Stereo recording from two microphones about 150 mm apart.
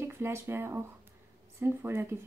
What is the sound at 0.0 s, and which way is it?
Speech, 15° right (ahead or behind).